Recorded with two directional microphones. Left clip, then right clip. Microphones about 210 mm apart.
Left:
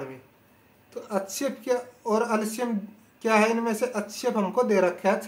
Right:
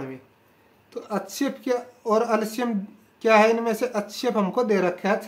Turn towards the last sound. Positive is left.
turn(degrees=-35)  # may be behind; listen again after turning